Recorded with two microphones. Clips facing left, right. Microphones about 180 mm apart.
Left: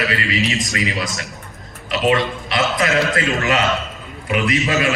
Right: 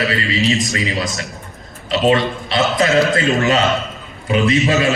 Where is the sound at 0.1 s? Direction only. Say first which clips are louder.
Right 3 dB; 30° right (ahead or behind).